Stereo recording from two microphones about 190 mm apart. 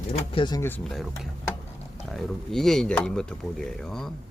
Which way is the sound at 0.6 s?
10° left (ahead or behind).